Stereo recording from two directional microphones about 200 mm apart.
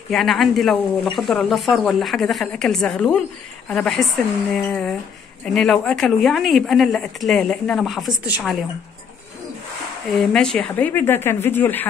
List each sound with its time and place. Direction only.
0.1 s a woman's voice: centre (ahead or behind)
10.1 s speech: 5° left (ahead or behind)